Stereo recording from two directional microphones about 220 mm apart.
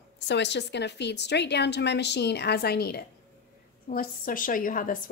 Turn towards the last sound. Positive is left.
turn(degrees=40)  # may be behind; listen again after turning